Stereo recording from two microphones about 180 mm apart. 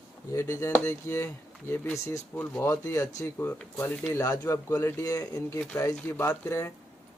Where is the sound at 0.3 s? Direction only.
15° left (ahead or behind).